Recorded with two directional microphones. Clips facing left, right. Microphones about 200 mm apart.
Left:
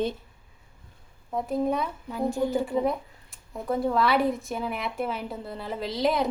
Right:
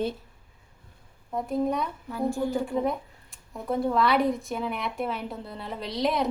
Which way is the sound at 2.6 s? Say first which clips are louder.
Left 1 dB; centre (ahead or behind).